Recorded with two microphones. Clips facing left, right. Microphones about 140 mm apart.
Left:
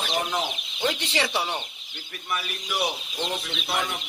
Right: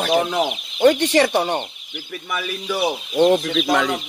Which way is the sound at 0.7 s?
50° right (ahead or behind).